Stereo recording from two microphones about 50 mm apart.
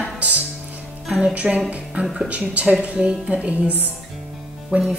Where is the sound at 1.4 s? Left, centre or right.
Right.